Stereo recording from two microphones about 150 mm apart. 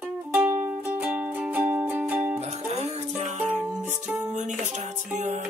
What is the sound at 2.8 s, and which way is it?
Music, 50° right (ahead or behind).